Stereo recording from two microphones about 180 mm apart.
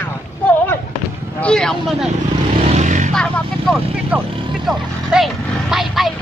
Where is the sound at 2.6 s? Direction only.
40° right (ahead or behind).